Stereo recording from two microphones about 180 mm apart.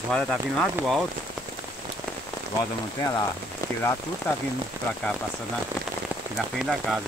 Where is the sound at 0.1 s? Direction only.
Centre (ahead or behind).